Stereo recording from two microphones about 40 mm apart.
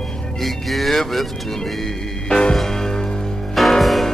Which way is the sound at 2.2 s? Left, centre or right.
Centre.